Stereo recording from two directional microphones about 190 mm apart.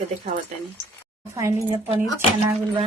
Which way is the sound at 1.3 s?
15° right (ahead or behind).